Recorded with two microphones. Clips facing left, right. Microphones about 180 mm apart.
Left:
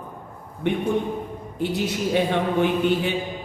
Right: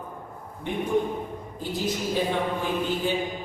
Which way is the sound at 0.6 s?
70° left (ahead or behind).